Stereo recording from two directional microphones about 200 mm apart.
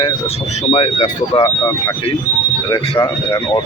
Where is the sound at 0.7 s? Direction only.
30° left (ahead or behind).